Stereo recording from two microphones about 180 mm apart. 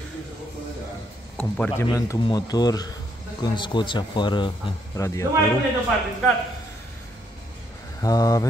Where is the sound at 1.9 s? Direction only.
20° left (ahead or behind).